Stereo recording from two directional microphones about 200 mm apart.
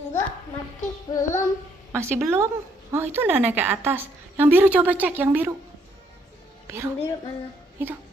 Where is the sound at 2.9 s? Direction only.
10° right (ahead or behind).